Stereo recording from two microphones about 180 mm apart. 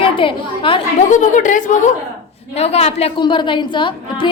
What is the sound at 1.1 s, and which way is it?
A woman's voice, 45° left (ahead or behind).